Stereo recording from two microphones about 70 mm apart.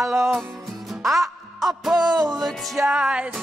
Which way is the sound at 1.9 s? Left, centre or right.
Right.